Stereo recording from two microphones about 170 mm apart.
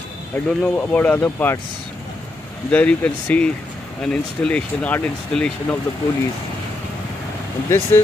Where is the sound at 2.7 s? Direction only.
10° left (ahead or behind).